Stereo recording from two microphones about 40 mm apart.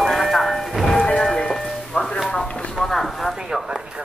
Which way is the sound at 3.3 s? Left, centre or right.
Centre.